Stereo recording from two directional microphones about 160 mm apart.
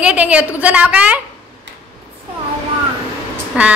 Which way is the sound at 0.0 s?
10° right (ahead or behind).